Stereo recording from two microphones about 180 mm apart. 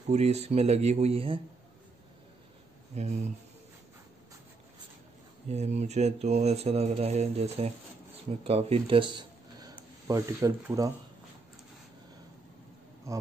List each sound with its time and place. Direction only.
0.1 s speech: 35° right (ahead or behind)
2.9 s speech: 40° right (ahead or behind)
5.5 s speech: 40° right (ahead or behind); by 10.9 s 20° right (ahead or behind)
13.1 s speech: 15° right (ahead or behind)